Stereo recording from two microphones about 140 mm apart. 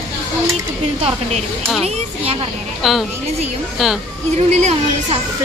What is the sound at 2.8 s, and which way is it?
A woman's voice, centre (ahead or behind).